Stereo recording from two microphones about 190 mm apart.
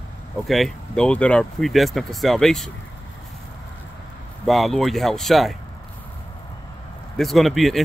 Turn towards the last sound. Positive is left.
turn(degrees=0)  # may be behind; listen again after turning